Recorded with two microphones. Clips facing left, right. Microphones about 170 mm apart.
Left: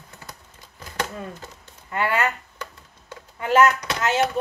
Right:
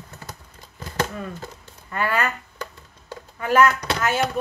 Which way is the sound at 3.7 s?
30° right (ahead or behind).